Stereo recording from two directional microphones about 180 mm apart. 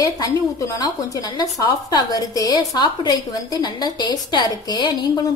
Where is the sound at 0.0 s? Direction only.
20° left (ahead or behind).